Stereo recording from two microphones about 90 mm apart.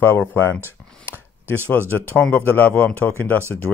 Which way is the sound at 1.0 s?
25° left (ahead or behind).